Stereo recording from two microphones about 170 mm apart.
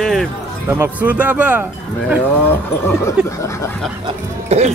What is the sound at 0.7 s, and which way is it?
Speech, 10° right (ahead or behind).